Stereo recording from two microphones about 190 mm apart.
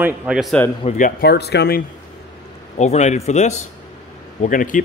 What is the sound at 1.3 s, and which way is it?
Speech, 60° left (ahead or behind).